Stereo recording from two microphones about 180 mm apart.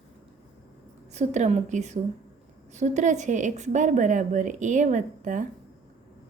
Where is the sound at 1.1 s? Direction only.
40° right (ahead or behind).